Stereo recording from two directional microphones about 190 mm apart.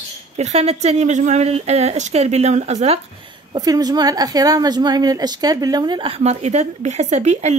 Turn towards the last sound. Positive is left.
turn(degrees=-35)  # may be behind; listen again after turning